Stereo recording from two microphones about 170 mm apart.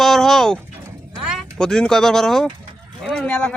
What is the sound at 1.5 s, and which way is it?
Speech, 5° left (ahead or behind).